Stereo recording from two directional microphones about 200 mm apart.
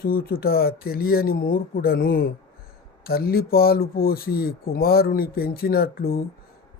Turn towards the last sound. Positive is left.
turn(degrees=50)  # may be behind; listen again after turning